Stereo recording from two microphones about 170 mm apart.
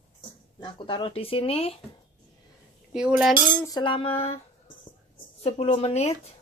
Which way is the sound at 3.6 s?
25° left (ahead or behind).